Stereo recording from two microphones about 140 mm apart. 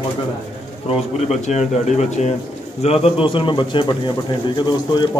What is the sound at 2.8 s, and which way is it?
Speech, 45° left (ahead or behind).